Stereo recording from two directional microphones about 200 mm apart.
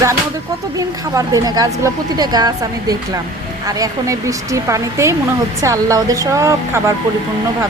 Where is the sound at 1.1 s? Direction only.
15° right (ahead or behind).